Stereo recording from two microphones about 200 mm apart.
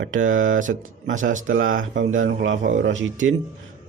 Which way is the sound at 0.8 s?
80° right.